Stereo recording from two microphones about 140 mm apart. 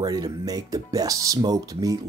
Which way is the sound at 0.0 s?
25° right (ahead or behind).